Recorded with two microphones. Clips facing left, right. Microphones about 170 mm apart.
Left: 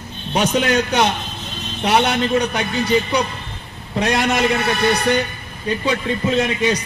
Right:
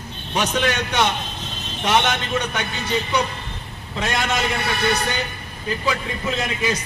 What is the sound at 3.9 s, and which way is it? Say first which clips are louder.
Speech: left 5 dB; 35° left (ahead or behind).